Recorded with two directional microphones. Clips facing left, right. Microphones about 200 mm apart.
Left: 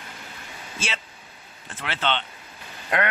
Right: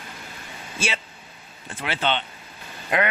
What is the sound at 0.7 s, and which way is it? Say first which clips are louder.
Speech: right 4 dB; 10° right (ahead or behind).